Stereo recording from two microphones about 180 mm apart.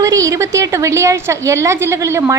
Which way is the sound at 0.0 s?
20° right (ahead or behind).